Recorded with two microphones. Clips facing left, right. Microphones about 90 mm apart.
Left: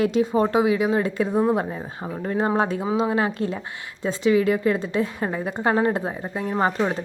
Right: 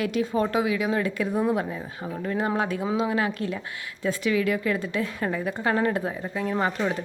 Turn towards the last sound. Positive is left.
turn(degrees=30)  # may be behind; listen again after turning